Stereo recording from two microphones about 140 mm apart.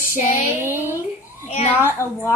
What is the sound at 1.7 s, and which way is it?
Speech, 15° right (ahead or behind).